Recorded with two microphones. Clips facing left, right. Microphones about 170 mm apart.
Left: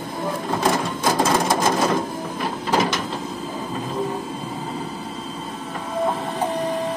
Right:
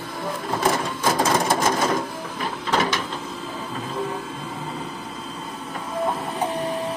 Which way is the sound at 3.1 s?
40° left (ahead or behind).